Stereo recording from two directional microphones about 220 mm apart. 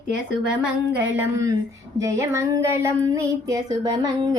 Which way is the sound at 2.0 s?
15° right (ahead or behind).